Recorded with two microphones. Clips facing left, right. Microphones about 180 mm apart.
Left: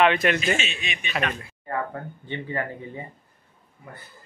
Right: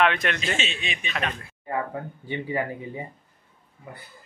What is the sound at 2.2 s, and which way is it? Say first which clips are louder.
Speech: right 2 dB; 10° right (ahead or behind).